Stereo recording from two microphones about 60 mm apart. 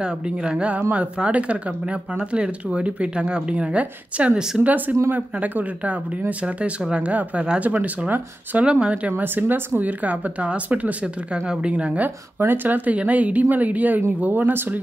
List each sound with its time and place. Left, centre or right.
0.0 s speech: centre
9.1 s speech: right
12.4 s speech: right